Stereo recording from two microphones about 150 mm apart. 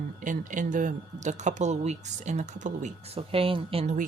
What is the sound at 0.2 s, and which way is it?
Speech, 60° right (ahead or behind).